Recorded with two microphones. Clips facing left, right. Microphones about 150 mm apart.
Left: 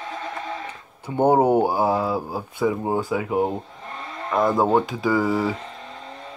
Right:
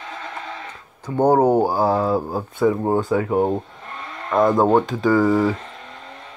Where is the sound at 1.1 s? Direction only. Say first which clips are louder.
Right 2 dB; 25° left (ahead or behind); by 3.3 s 10° left (ahead or behind).